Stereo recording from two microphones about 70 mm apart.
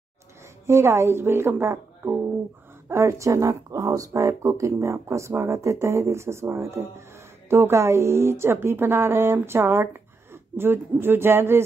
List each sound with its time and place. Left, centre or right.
0.7 s speech: right
2.9 s speech: right